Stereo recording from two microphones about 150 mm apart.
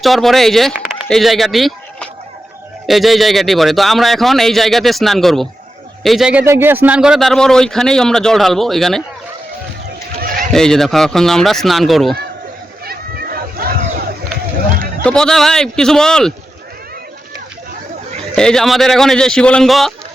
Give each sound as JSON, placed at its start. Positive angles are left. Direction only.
{"t": 0.0, "sound": "a man's voice", "side_deg": 0}
{"t": 6.4, "sound": "a man's voice", "side_deg": -15}
{"t": 10.2, "sound": "fowl", "side_deg": -65}
{"t": 10.5, "sound": "a man's voice", "side_deg": 5}
{"t": 12.8, "sound": "a sound", "side_deg": -90}
{"t": 15.0, "sound": "a man's voice", "side_deg": 5}
{"t": 18.3, "sound": "a man's voice", "side_deg": 5}